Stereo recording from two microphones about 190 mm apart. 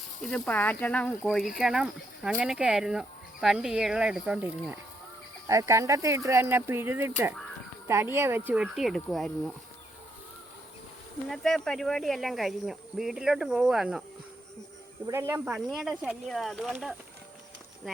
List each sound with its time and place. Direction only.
0.2 s speech: 5° left (ahead or behind)
11.3 s speech: centre (ahead or behind)
15.0 s speech: 15° right (ahead or behind)
15.5 s speech: centre (ahead or behind)